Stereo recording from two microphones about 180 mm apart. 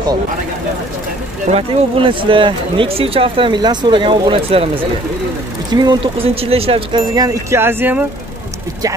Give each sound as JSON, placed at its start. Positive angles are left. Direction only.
{"t": 1.5, "sound": "speech", "side_deg": -30}